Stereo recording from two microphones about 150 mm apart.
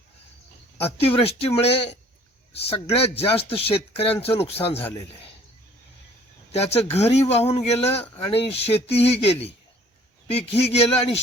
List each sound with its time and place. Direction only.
0.8 s speech: 40° left (ahead or behind)
6.5 s speech: 45° left (ahead or behind)